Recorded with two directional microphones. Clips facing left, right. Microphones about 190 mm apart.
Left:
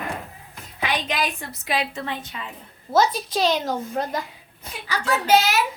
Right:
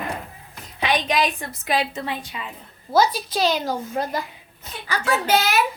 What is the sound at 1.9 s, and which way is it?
A woman's voice, 10° right (ahead or behind).